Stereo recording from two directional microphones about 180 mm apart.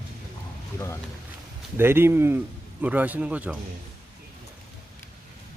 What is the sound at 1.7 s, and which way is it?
Speech, 10° right (ahead or behind).